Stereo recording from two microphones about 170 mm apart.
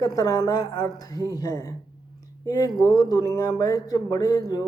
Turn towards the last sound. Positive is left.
turn(degrees=20)  # may be behind; listen again after turning